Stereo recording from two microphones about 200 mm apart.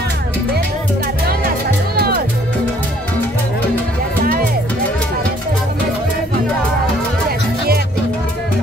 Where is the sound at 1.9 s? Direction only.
50° right (ahead or behind).